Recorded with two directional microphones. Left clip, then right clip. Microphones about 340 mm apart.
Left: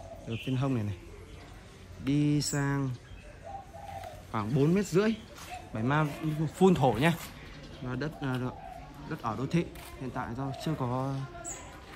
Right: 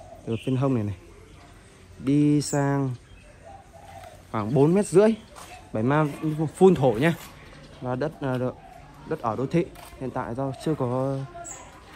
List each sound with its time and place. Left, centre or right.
0.3 s speech: centre
2.0 s speech: centre
4.3 s speech: centre
7.9 s speech: centre